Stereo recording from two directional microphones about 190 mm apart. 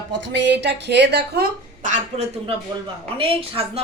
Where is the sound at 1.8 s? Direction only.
40° right (ahead or behind).